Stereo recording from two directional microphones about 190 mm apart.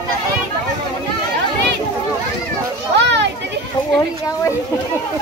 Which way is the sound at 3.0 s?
65° right (ahead or behind).